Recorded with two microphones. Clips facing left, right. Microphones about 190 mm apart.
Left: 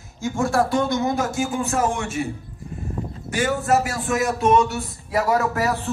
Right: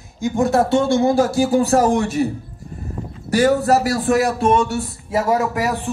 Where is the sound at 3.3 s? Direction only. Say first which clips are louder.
Right 6 dB; 35° right (ahead or behind); by 5.8 s 15° right (ahead or behind).